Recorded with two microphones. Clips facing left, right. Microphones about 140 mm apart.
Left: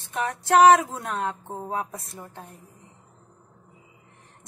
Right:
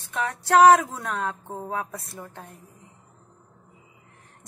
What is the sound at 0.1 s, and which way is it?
Speech, 20° left (ahead or behind).